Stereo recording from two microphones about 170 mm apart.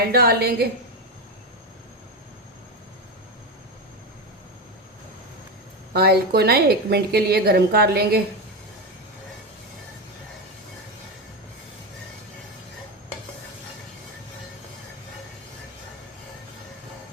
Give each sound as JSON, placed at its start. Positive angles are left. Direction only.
{"t": 0.1, "sound": "a woman's voice", "side_deg": -65}
{"t": 5.9, "sound": "a woman's voice", "side_deg": -70}